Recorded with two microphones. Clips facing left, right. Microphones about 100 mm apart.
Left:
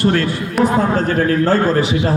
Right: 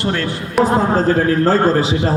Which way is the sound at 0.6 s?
30° right (ahead or behind).